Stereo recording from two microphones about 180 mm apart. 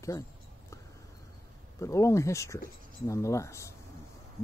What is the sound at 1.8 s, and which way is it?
Speech, 15° left (ahead or behind).